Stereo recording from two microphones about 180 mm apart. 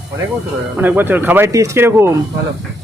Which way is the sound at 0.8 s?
10° right (ahead or behind).